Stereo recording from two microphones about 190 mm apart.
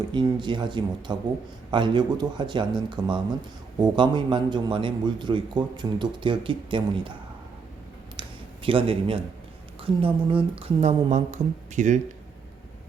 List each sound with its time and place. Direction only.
0.1 s a man's voice: 25° right (ahead or behind)
8.2 s a sound: 25° right (ahead or behind)
8.6 s a man's voice: 30° right (ahead or behind)